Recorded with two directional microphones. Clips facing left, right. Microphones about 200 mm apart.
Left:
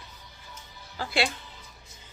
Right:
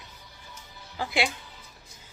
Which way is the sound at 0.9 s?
15° right (ahead or behind).